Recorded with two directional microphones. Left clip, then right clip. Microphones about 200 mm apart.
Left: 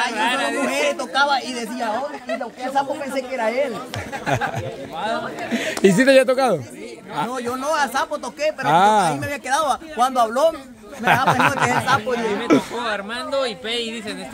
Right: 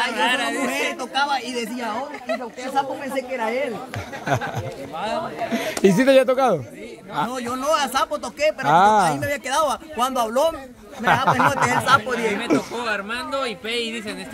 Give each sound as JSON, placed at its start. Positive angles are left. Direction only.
{"t": 0.1, "sound": "a sound", "side_deg": -5}
{"t": 0.7, "sound": "speech", "side_deg": 15}
{"t": 2.7, "sound": "speech", "side_deg": 20}
{"t": 4.9, "sound": "speech", "side_deg": -10}
{"t": 5.5, "sound": "speech", "side_deg": 5}
{"t": 7.2, "sound": "speech", "side_deg": -10}
{"t": 8.6, "sound": "speech", "side_deg": 5}
{"t": 9.0, "sound": "speech", "side_deg": -5}
{"t": 11.2, "sound": "speech", "side_deg": 10}
{"t": 12.1, "sound": "speech", "side_deg": -55}
{"t": 12.7, "sound": "speech", "side_deg": -10}